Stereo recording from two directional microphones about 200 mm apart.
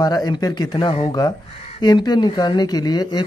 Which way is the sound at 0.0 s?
20° left (ahead or behind).